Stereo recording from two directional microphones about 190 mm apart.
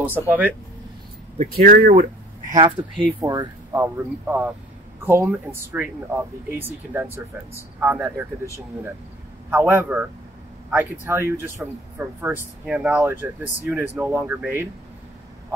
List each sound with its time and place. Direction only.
0.1 s speech: 10° right (ahead or behind)
1.6 s speech: 50° right (ahead or behind); by 3.2 s 30° right (ahead or behind)
3.2 s speech: 15° right (ahead or behind)
9.5 s speech: 10° right (ahead or behind)